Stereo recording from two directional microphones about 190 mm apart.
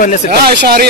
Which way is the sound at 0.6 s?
55° right (ahead or behind).